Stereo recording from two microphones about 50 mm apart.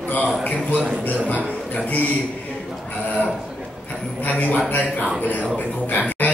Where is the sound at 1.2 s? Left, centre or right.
Left.